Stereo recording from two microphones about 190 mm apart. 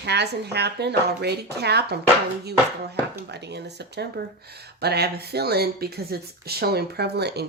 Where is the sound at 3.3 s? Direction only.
60° right (ahead or behind).